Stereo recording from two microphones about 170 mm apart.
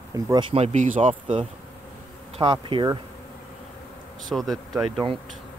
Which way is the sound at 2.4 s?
30° right (ahead or behind).